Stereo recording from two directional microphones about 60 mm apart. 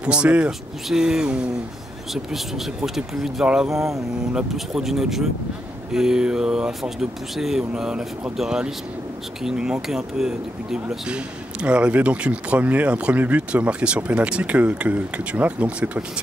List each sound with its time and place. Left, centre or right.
0.0 s speech: centre
2.3 s speech: centre
4.8 s speech: centre; by 16.0 s right